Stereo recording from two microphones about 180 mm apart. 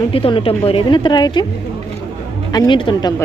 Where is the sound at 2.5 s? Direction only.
25° left (ahead or behind).